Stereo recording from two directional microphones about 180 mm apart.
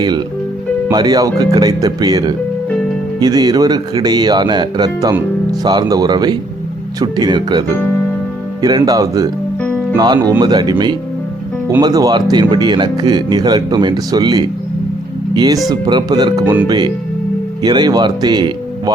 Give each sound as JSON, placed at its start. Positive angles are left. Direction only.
{"t": 0.9, "sound": "speech", "side_deg": -20}
{"t": 8.6, "sound": "speech", "side_deg": -20}
{"t": 15.7, "sound": "speech", "side_deg": -25}